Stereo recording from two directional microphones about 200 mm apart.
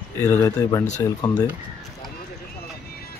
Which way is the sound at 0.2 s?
15° left (ahead or behind).